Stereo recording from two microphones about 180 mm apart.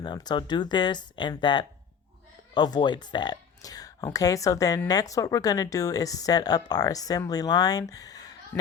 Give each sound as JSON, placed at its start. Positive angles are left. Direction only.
{"t": 0.0, "sound": "speech", "side_deg": 25}